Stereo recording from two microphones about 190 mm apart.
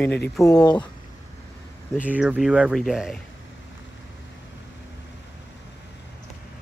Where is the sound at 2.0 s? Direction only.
5° right (ahead or behind).